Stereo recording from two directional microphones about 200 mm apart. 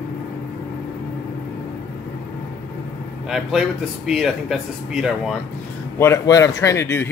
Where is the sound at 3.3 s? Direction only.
Centre (ahead or behind).